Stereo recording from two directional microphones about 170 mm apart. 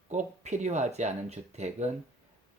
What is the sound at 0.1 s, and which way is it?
Speech, 45° right (ahead or behind).